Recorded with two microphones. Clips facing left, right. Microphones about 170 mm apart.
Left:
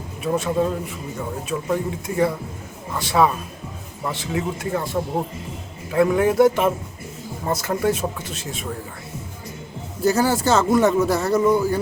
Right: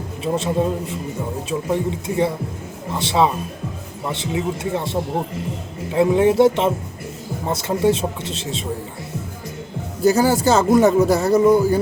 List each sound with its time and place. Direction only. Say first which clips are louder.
0.2 s a man's voice: right 1 dB; 25° right (ahead or behind)
10.0 s speech: right 3 dB; 15° right (ahead or behind)
10.4 s speech: right 2 dB; 35° right (ahead or behind)
11.0 s speech: right 4 dB; 15° right (ahead or behind)